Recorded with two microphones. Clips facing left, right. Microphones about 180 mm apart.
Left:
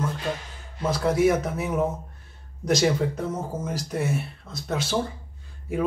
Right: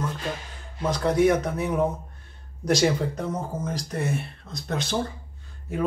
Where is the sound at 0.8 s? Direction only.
5° left (ahead or behind).